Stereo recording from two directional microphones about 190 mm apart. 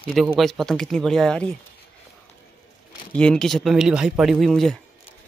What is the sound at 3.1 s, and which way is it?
Speech, 5° left (ahead or behind).